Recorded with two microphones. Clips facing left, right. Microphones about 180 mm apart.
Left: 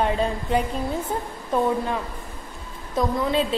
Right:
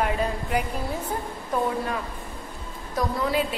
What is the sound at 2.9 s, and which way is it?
Speech, 25° left (ahead or behind).